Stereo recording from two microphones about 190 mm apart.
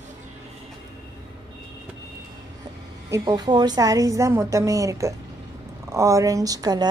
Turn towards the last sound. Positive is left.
turn(degrees=-20)  # may be behind; listen again after turning